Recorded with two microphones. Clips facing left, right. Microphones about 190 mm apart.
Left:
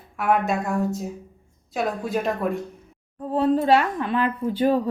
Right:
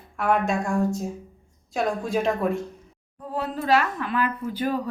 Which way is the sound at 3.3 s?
30° left (ahead or behind).